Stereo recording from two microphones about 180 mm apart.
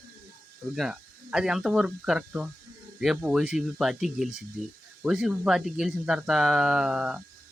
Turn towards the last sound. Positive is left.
turn(degrees=-5)  # may be behind; listen again after turning